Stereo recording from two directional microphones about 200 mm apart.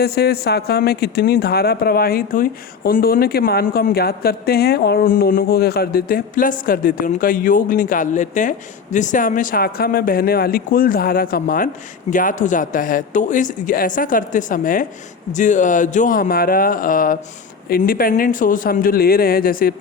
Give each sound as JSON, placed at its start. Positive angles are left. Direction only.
{"t": 0.0, "sound": "speech", "side_deg": 50}